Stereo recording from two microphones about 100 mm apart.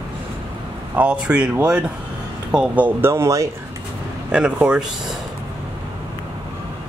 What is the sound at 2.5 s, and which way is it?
Speech, 15° right (ahead or behind).